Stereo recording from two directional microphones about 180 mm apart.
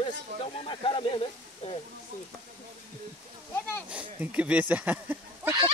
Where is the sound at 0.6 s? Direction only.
30° left (ahead or behind).